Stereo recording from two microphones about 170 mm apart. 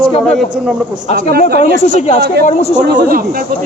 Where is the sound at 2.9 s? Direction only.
55° right (ahead or behind).